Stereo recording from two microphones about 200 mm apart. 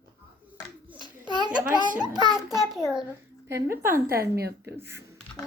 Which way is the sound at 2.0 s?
20° right (ahead or behind).